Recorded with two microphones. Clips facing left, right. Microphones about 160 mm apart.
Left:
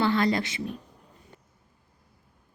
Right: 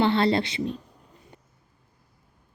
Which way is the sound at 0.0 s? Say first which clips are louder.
Right 3 dB; 30° right (ahead or behind).